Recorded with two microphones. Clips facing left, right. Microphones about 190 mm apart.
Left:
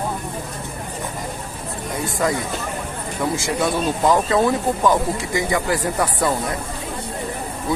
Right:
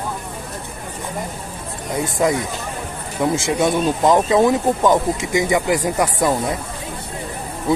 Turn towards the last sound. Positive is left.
turn(degrees=-15)  # may be behind; listen again after turning